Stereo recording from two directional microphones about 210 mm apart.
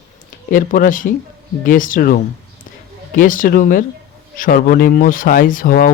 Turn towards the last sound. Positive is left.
turn(degrees=40)  # may be behind; listen again after turning